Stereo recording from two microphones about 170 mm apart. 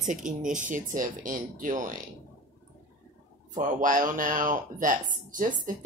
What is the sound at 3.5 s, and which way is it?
Speech, 50° right (ahead or behind).